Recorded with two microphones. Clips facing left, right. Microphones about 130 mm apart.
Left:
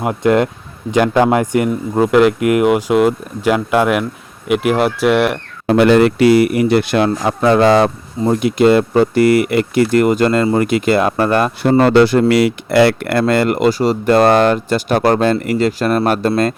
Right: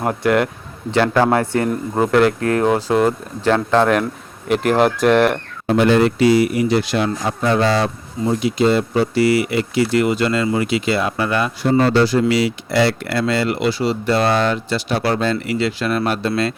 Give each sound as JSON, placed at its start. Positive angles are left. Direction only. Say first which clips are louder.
{"t": 0.0, "sound": "speech", "louder": "left 3 dB", "side_deg": 20}
{"t": 5.6, "sound": "speech", "louder": "left 4 dB", "side_deg": 75}
{"t": 11.8, "sound": "speech", "louder": "left 5 dB", "side_deg": 60}